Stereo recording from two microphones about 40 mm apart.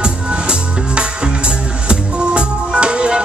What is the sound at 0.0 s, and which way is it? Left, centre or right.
Music, right.